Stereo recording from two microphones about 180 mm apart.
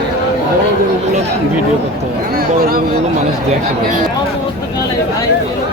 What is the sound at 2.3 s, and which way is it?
Speech, 55° right (ahead or behind).